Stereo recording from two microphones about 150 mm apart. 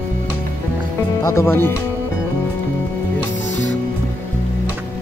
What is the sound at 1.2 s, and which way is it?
Speech, 20° left (ahead or behind).